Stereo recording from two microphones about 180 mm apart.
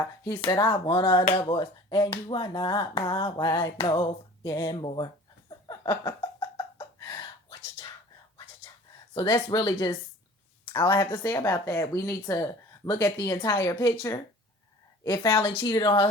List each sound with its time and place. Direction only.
0.0 s speech: 20° left (ahead or behind)
4.4 s a sound: 20° left (ahead or behind)
9.1 s speech: 25° left (ahead or behind)
11.0 s a woman's voice: 25° left (ahead or behind)